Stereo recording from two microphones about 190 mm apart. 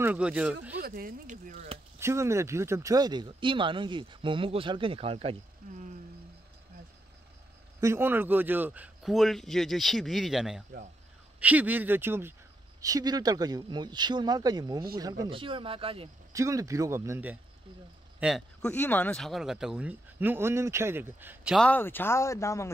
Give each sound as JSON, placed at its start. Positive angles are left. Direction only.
{"t": 0.0, "sound": "speech", "side_deg": -5}
{"t": 0.7, "sound": "speech", "side_deg": -50}
{"t": 2.0, "sound": "speech", "side_deg": -15}
{"t": 5.6, "sound": "speech", "side_deg": -50}
{"t": 7.8, "sound": "speech", "side_deg": -15}
{"t": 16.3, "sound": "speech", "side_deg": -15}
{"t": 18.2, "sound": "speech", "side_deg": 0}
{"t": 21.5, "sound": "speech", "side_deg": 10}